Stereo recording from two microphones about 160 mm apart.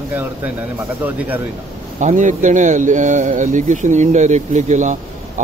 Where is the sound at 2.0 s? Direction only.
50° right (ahead or behind).